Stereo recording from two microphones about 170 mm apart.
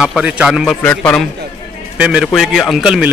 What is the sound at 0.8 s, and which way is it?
Speech, 5° left (ahead or behind).